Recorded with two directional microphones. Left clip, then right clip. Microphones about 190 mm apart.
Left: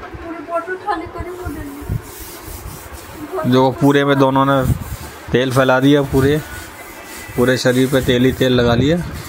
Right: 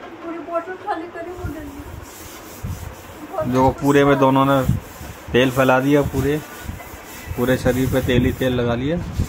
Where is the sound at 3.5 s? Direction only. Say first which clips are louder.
Left 2 dB; 20° left (ahead or behind).